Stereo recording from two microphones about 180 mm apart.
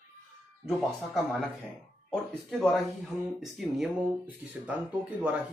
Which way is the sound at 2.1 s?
Centre (ahead or behind).